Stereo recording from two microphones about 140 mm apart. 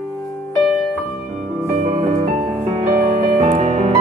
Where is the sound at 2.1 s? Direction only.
80° right; by 3.9 s 55° right (ahead or behind).